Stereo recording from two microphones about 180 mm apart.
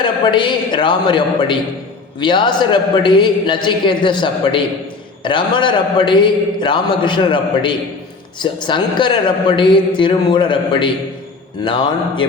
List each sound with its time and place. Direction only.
0.0 s a man's voice: 25° left (ahead or behind)